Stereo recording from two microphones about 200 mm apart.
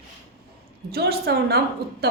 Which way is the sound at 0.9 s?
55° right (ahead or behind).